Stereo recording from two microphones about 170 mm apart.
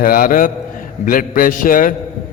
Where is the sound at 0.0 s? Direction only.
55° left (ahead or behind).